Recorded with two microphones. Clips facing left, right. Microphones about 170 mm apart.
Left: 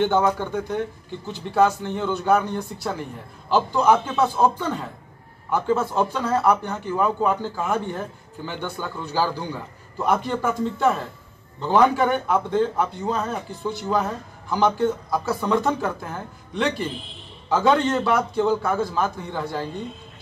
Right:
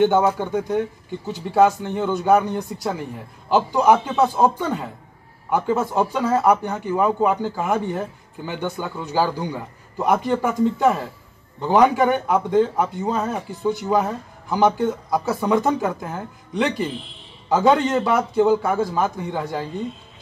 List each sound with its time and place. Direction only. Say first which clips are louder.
0.0 s speech: right 3 dB; 10° right (ahead or behind)